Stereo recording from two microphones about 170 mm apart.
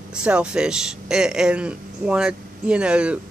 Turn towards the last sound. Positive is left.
turn(degrees=-5)  # may be behind; listen again after turning